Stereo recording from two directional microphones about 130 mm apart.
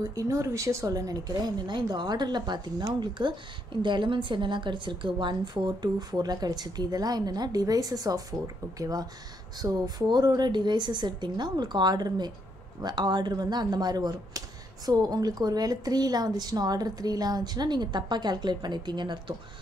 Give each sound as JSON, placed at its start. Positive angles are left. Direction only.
{"t": 0.0, "sound": "a woman's voice", "side_deg": -25}